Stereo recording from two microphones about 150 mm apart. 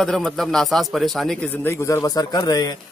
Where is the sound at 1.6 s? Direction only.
15° left (ahead or behind).